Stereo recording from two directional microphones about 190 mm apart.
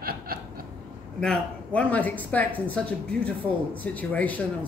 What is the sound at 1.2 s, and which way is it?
Speech, 5° left (ahead or behind).